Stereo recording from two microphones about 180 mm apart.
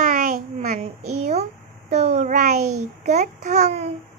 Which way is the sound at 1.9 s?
40° right (ahead or behind).